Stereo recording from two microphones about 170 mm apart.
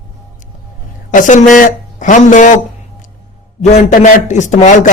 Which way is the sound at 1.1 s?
50° left (ahead or behind).